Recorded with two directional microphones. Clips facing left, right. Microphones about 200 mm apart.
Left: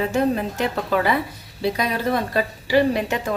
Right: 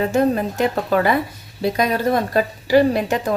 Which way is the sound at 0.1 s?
45° right (ahead or behind).